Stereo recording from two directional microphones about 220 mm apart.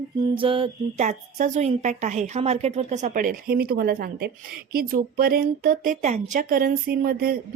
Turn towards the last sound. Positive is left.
turn(degrees=-40)  # may be behind; listen again after turning